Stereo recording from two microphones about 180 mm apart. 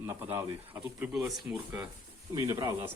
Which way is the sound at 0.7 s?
10° right (ahead or behind).